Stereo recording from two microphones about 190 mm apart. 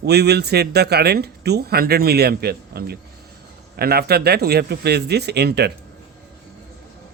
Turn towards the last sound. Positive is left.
turn(degrees=-60)  # may be behind; listen again after turning